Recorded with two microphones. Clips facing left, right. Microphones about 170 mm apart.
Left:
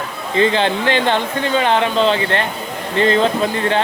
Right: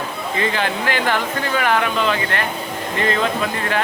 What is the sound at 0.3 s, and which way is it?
Speech, 30° left (ahead or behind).